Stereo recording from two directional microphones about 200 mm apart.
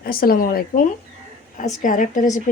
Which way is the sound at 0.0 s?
50° left (ahead or behind).